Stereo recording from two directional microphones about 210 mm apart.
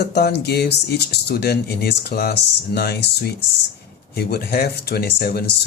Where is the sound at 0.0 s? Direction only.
50° left (ahead or behind).